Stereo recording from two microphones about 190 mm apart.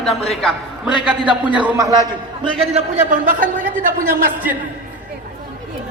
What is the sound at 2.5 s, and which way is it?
A man's voice, 40° right (ahead or behind).